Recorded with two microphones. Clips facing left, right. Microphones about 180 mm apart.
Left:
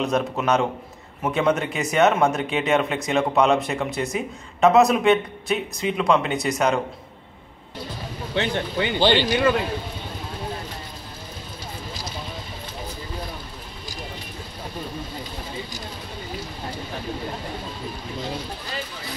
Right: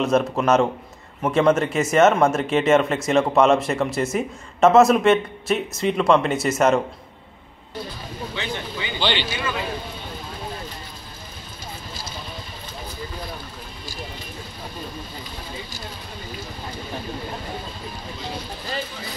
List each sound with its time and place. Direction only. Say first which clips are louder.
0.0 s speech: right 3 dB; centre (ahead or behind)
8.4 s speech: left 8 dB; 60° left (ahead or behind)